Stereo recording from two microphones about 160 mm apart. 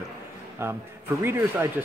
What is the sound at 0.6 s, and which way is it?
Speech, 15° right (ahead or behind).